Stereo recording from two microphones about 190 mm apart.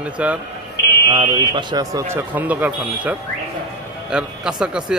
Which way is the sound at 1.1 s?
25° right (ahead or behind).